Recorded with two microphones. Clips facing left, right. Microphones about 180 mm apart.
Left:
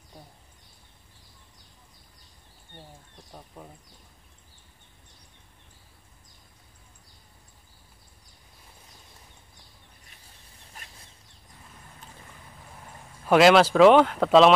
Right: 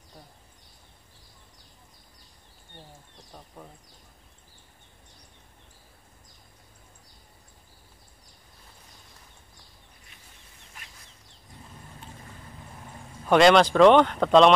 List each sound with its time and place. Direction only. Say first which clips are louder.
13.3 s speech: even; 5° left (ahead or behind)